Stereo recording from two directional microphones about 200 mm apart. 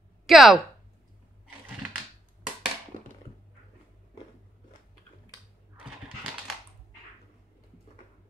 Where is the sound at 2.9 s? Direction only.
40° left (ahead or behind).